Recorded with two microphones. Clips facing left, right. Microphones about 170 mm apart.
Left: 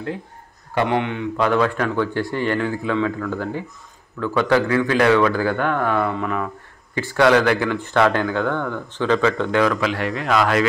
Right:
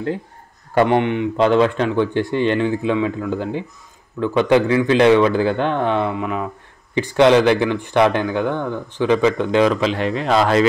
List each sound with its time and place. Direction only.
0.8 s speech: 25° right (ahead or behind)
6.0 s speech: 10° right (ahead or behind); by 10.6 s 25° right (ahead or behind)